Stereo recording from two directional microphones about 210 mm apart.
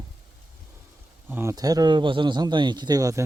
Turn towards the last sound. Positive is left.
turn(degrees=-15)  # may be behind; listen again after turning